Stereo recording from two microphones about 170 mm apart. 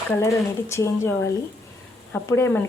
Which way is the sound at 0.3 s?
15° left (ahead or behind).